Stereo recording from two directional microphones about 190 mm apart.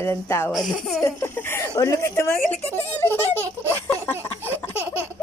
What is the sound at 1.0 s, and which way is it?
Speech, 15° left (ahead or behind).